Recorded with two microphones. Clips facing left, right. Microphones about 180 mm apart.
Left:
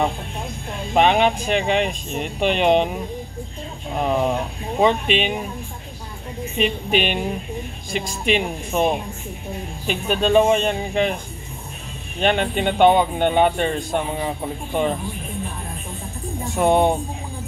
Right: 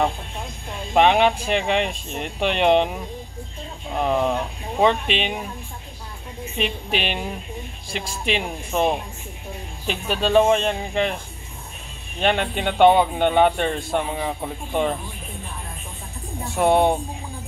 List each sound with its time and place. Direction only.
0.9 s speech: 5° left (ahead or behind)
4.0 s speech: 5° left (ahead or behind)
6.6 s speech: centre (ahead or behind)
12.2 s speech: centre (ahead or behind)
16.5 s speech: 5° right (ahead or behind)